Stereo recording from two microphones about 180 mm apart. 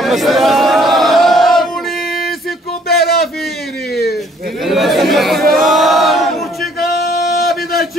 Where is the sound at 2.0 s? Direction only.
55° left (ahead or behind).